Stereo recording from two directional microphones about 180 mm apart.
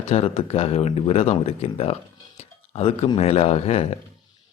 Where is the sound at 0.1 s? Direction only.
35° left (ahead or behind).